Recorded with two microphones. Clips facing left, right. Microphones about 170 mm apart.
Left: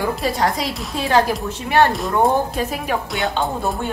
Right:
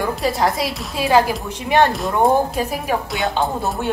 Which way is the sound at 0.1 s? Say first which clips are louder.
Right 1 dB; centre (ahead or behind).